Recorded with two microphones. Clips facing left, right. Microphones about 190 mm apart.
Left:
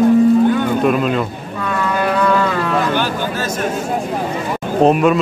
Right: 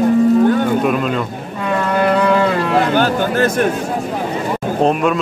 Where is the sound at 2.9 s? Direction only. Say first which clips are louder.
Right 4 dB; 50° right (ahead or behind).